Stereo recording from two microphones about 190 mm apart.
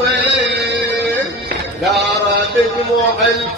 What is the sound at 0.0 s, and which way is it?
Chant, 60° right (ahead or behind).